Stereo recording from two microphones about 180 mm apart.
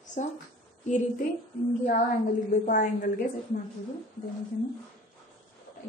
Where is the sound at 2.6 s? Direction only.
50° left (ahead or behind).